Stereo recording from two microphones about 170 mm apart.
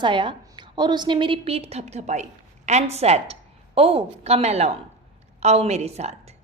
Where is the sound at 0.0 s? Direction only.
30° right (ahead or behind).